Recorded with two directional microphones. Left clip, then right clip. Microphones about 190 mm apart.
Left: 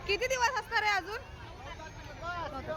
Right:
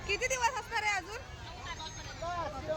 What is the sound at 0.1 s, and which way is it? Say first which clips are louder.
Vehicle: left 2 dB; 30° left (ahead or behind).